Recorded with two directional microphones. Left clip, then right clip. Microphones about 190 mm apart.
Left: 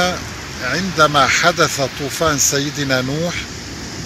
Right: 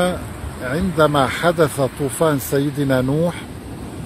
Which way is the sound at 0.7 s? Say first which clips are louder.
Left 2 dB; 40° right (ahead or behind).